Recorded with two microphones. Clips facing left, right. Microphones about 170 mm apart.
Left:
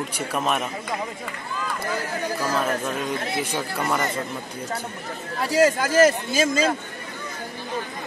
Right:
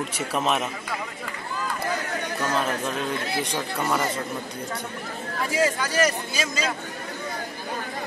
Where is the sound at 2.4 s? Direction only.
Centre (ahead or behind).